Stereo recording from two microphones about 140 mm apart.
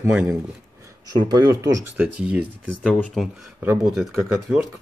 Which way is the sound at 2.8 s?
10° left (ahead or behind).